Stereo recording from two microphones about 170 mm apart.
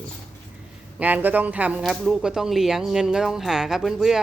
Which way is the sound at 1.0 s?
10° right (ahead or behind).